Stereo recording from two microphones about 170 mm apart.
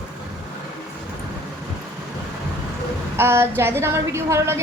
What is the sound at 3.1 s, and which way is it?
A woman's voice, 15° right (ahead or behind).